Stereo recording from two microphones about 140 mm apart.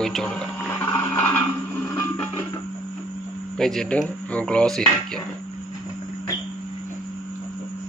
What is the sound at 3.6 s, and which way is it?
A man's voice, 5° left (ahead or behind).